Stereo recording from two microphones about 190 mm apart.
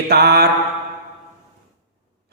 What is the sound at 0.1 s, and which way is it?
Speech, 55° right (ahead or behind).